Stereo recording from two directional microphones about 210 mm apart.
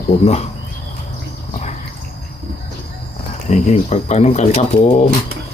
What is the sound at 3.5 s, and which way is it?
Speech, 35° left (ahead or behind).